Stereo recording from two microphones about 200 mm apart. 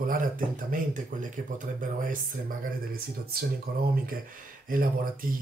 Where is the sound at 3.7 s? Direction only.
50° right (ahead or behind).